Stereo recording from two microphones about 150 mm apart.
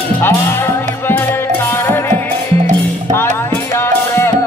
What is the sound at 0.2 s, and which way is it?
Music, 15° left (ahead or behind).